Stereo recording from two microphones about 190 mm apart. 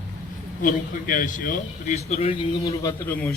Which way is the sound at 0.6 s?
45° left (ahead or behind).